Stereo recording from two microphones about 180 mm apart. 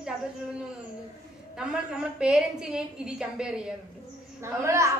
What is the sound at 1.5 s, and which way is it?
A woman's voice, 5° right (ahead or behind).